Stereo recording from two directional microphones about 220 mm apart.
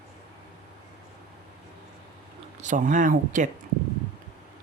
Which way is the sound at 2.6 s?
35° right (ahead or behind).